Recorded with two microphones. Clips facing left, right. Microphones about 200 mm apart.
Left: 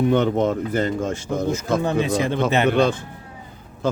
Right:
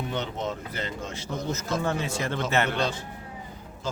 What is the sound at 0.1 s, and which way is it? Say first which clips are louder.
Speech: left 12 dB; 55° left (ahead or behind).